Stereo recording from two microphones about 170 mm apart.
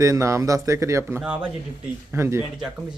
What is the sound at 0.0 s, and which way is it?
Speech, 15° right (ahead or behind).